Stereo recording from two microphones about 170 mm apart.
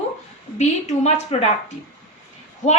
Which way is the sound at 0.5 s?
40° left (ahead or behind).